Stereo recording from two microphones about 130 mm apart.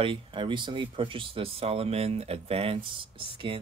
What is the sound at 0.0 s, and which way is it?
Speech, 40° right (ahead or behind).